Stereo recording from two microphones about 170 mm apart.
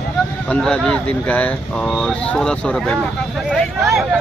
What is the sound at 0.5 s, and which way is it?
Speech, 5° left (ahead or behind).